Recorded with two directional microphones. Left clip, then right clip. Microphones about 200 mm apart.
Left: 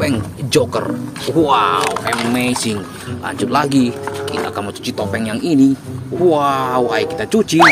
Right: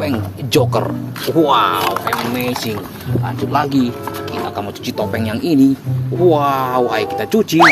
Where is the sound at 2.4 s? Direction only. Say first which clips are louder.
Left 1 dB; 20° left (ahead or behind).